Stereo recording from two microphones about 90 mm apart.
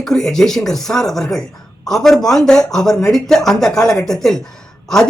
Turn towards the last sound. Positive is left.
turn(degrees=5)  # may be behind; listen again after turning